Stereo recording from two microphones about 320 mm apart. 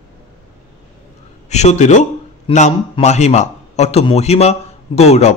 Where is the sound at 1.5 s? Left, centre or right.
Left.